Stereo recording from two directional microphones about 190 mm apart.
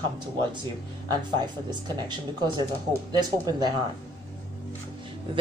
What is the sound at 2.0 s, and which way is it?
A man's voice, 20° right (ahead or behind).